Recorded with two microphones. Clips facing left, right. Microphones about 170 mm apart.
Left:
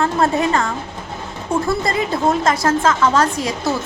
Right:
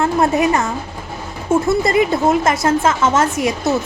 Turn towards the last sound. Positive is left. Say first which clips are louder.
# right 2 dB
turn(degrees=-20)  # may be behind; listen again after turning